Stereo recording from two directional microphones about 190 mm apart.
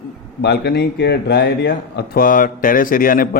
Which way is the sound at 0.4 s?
60° left (ahead or behind).